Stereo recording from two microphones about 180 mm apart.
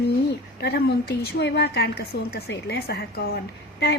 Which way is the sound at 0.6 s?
65° left (ahead or behind).